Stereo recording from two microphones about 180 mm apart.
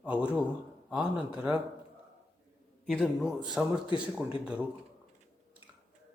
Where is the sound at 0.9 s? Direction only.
5° right (ahead or behind).